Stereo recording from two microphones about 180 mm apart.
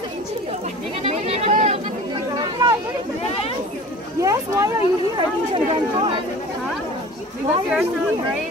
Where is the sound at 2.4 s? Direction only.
20° right (ahead or behind).